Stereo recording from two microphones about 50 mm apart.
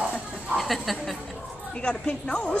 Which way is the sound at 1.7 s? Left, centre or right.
Centre.